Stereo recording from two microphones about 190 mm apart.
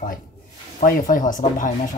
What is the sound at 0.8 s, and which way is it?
Speech, 45° left (ahead or behind).